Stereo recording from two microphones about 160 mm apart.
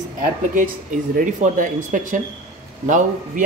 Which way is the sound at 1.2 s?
50° right (ahead or behind).